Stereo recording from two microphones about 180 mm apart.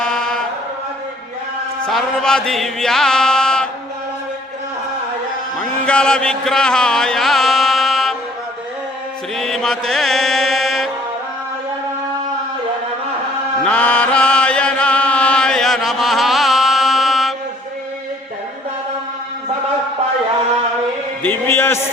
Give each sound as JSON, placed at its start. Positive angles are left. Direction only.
{"t": 0.0, "sound": "a sound", "side_deg": 5}
{"t": 1.9, "sound": "music", "side_deg": 0}
{"t": 5.5, "sound": "music", "side_deg": 5}
{"t": 9.3, "sound": "mantra", "side_deg": 0}
{"t": 13.7, "sound": "chant", "side_deg": 5}
{"t": 21.2, "sound": "music", "side_deg": 10}